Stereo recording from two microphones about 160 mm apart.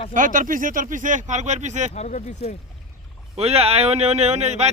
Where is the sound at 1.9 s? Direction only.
45° left (ahead or behind).